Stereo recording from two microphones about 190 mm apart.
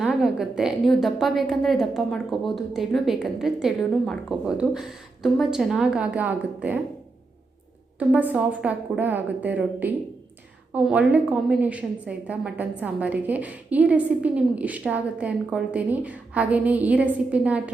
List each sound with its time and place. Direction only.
0.0 s a woman's voice: 5° right (ahead or behind)
7.9 s a woman's voice: 10° right (ahead or behind)